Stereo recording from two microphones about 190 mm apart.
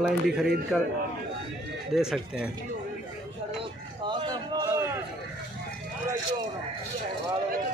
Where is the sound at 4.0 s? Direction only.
25° right (ahead or behind).